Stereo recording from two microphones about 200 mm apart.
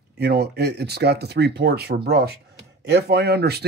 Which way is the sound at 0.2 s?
55° right (ahead or behind).